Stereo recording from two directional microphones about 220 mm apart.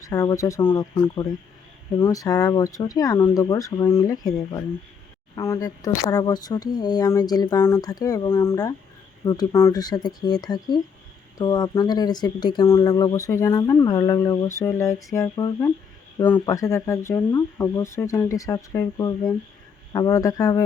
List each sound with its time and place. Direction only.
0.1 s speech: 15° left (ahead or behind)